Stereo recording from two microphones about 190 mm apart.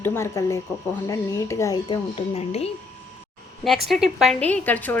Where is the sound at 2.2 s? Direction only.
35° left (ahead or behind).